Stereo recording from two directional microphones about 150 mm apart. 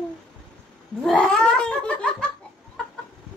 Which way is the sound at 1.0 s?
5° left (ahead or behind).